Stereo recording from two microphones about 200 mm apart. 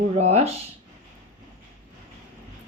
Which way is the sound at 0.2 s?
35° right (ahead or behind).